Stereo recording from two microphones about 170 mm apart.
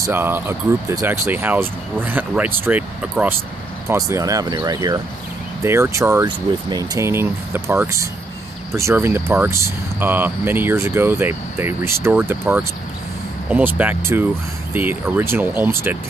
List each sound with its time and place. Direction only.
0.0 s speech: 15° right (ahead or behind)
3.9 s speech: 20° right (ahead or behind)